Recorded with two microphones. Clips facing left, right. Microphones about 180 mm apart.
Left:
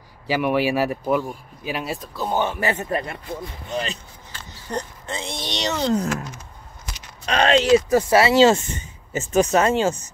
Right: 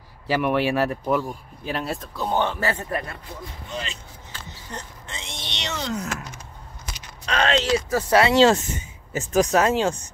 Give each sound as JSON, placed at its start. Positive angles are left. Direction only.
{"t": 0.3, "sound": "speech", "side_deg": 5}
{"t": 4.5, "sound": "speech", "side_deg": 35}
{"t": 7.2, "sound": "speech", "side_deg": 15}